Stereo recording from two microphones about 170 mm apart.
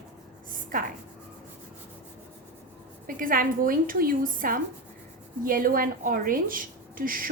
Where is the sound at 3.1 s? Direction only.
55° right (ahead or behind).